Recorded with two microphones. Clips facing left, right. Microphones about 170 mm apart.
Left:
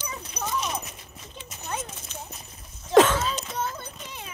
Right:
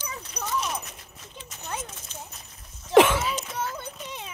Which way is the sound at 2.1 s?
65° left (ahead or behind).